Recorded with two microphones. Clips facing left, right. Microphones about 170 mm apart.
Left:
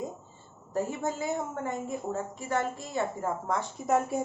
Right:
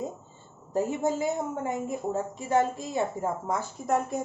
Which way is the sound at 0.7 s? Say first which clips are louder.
Right 4 dB; 20° right (ahead or behind).